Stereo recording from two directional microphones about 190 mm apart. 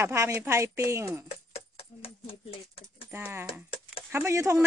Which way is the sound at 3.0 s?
10° right (ahead or behind).